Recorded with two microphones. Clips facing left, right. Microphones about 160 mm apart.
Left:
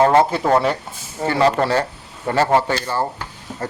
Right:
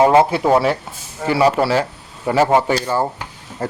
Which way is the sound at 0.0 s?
10° right (ahead or behind).